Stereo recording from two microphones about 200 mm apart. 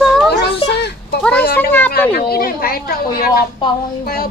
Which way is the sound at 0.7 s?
55° left (ahead or behind).